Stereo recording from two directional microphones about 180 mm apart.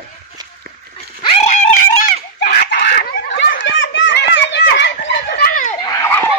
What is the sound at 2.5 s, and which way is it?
Screaming, 65° left (ahead or behind).